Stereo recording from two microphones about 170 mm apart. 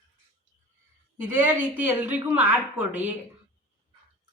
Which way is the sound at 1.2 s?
10° right (ahead or behind).